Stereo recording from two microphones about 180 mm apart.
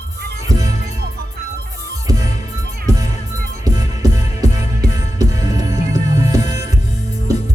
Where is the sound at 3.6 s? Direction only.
20° right (ahead or behind).